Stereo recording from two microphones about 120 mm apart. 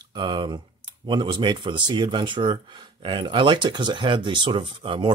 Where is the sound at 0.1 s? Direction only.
40° right (ahead or behind).